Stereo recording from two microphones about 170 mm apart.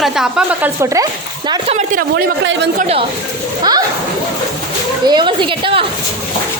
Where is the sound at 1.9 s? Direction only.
75° right (ahead or behind); by 2.7 s 90° right.